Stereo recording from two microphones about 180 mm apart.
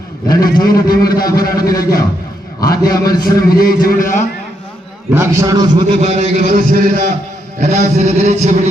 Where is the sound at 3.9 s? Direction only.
50° left (ahead or behind).